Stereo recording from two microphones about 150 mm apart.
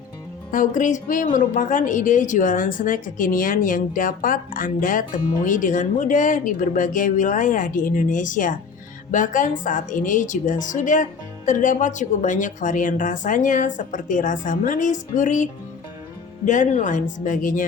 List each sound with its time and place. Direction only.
0.5 s speech: 60° left (ahead or behind)
16.5 s speech: 55° left (ahead or behind)